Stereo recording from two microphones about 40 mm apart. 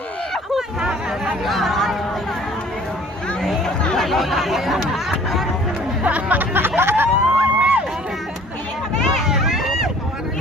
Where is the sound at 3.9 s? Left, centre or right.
Centre.